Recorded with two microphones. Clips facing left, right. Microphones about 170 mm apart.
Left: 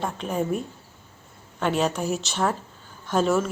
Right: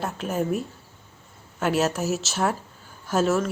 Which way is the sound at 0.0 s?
5° right (ahead or behind).